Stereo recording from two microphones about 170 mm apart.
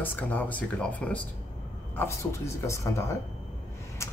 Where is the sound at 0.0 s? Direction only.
10° left (ahead or behind).